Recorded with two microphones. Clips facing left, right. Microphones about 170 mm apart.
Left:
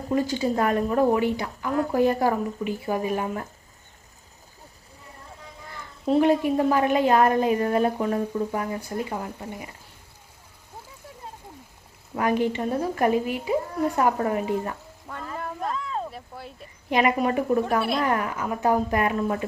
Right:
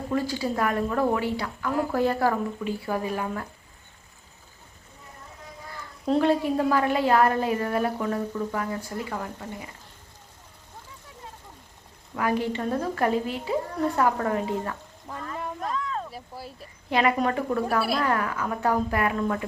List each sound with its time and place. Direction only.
0.1 s a woman's voice: 20° left (ahead or behind)
6.1 s a woman's voice: 15° left (ahead or behind)
12.1 s a woman's voice: 20° left (ahead or behind)
15.4 s a sound: centre (ahead or behind)
15.7 s a sound: 30° left (ahead or behind)
16.1 s speech: centre (ahead or behind)
16.9 s a woman's voice: 20° left (ahead or behind)